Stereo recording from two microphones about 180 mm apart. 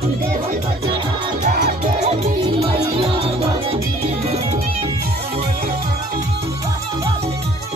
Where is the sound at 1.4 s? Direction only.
50° right (ahead or behind).